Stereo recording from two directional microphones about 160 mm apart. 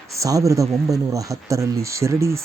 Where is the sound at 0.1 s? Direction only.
20° right (ahead or behind).